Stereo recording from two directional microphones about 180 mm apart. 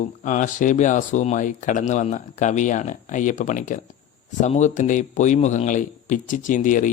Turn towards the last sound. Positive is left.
turn(degrees=45)  # may be behind; listen again after turning